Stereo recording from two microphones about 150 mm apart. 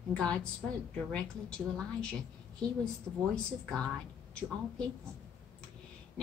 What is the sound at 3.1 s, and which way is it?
Speech, 10° right (ahead or behind).